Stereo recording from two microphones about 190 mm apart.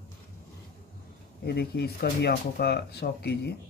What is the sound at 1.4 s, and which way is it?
Speech, 60° left (ahead or behind).